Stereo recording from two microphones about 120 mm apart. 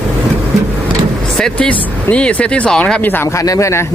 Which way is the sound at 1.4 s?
10° left (ahead or behind).